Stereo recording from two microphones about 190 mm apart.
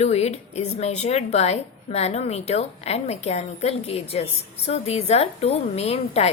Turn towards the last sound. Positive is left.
turn(degrees=35)  # may be behind; listen again after turning